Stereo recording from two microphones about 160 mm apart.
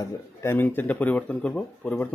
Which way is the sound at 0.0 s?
15° left (ahead or behind).